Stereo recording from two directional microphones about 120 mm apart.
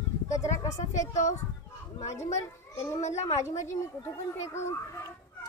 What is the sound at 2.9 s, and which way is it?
Speech, 70° left (ahead or behind).